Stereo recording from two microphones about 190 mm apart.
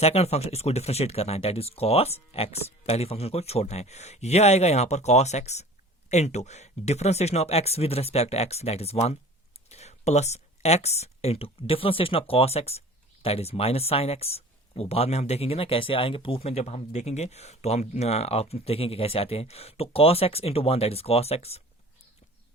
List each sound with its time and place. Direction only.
0.0 s speech: 35° left (ahead or behind)